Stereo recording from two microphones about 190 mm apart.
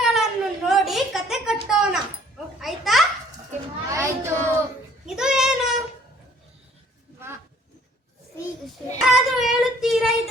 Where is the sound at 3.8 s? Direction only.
15° right (ahead or behind).